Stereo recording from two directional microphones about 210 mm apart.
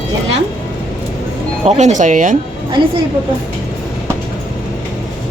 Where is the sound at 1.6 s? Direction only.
35° right (ahead or behind).